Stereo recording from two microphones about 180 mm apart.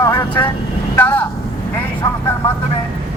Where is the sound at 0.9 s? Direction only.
10° left (ahead or behind).